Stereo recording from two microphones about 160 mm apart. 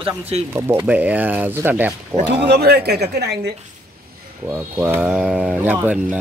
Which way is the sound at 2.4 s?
85° right.